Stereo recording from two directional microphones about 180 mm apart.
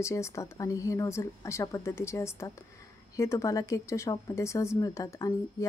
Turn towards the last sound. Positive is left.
turn(degrees=20)  # may be behind; listen again after turning